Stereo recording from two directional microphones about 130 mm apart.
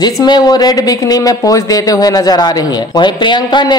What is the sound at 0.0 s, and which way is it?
A man's voice, 35° left (ahead or behind).